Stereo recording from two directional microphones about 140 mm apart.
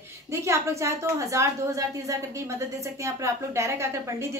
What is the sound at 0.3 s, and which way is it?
A woman's voice, 20° right (ahead or behind).